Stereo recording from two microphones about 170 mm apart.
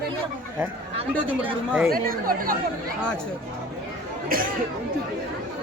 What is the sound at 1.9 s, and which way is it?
Speech, 55° right (ahead or behind).